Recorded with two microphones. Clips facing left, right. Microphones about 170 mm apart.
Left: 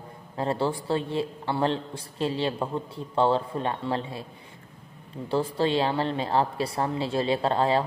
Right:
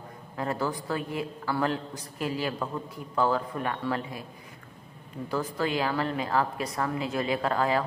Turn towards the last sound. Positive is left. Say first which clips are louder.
# left 3 dB
turn(degrees=30)  # may be behind; listen again after turning